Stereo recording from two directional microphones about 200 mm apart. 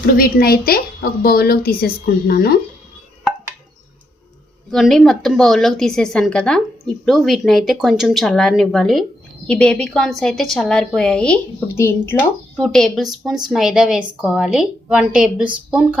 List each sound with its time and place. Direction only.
0.2 s a woman's voice: 50° left (ahead or behind)
4.7 s a woman's voice: centre (ahead or behind)